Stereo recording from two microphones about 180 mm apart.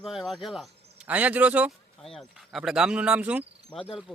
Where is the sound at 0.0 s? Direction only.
Centre (ahead or behind).